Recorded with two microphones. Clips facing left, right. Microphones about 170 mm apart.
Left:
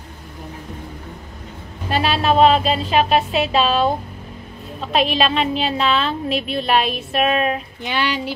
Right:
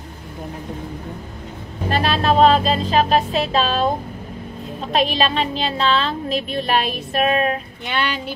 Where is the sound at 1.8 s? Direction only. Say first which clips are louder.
Even; 45° right (ahead or behind).